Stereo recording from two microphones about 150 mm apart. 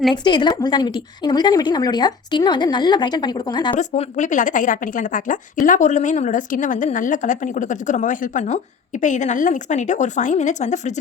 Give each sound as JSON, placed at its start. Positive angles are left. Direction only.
{"t": 0.1, "sound": "speech", "side_deg": 30}
{"t": 3.8, "sound": "a woman's voice", "side_deg": 55}